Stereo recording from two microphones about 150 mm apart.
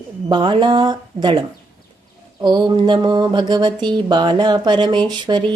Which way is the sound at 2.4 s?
30° right (ahead or behind).